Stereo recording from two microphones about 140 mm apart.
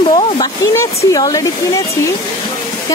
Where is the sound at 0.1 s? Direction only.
30° left (ahead or behind).